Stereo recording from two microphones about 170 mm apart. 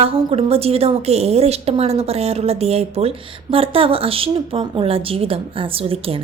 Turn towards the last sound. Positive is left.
turn(degrees=-35)  # may be behind; listen again after turning